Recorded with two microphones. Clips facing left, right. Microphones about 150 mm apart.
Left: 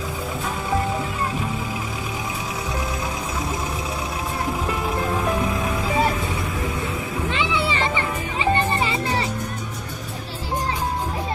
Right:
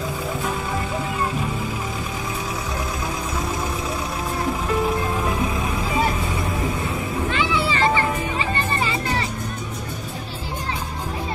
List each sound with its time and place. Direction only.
7.3 s music: 20° left (ahead or behind)